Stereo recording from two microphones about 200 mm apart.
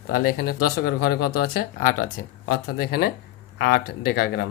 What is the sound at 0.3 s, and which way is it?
Speech, 45° left (ahead or behind).